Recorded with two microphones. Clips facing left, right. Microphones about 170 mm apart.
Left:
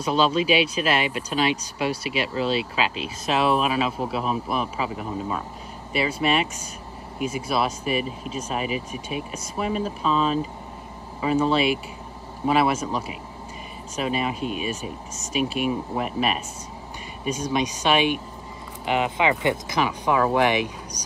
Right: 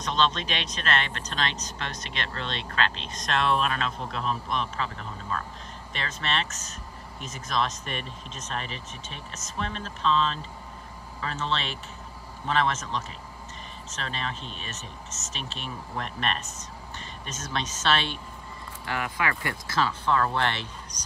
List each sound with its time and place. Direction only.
0.0 s speech: 10° left (ahead or behind)